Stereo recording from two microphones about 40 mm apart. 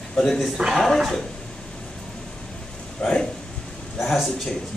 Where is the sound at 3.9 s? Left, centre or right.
Centre.